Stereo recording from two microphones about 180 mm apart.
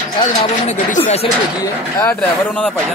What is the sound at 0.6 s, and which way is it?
Speech, 40° left (ahead or behind).